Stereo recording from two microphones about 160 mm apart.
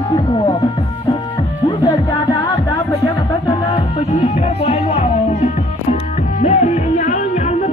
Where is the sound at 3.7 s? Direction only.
35° left (ahead or behind).